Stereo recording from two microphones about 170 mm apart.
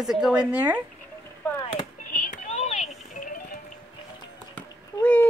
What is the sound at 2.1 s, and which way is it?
Music, 50° left (ahead or behind).